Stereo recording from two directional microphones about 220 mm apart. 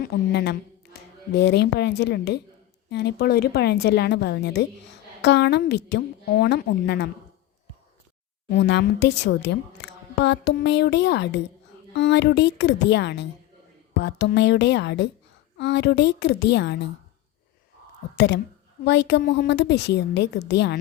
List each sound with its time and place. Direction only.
0.0 s a woman's voice: 45° left (ahead or behind)
8.4 s a woman's voice: 50° left (ahead or behind)
18.2 s a woman's voice: 50° left (ahead or behind)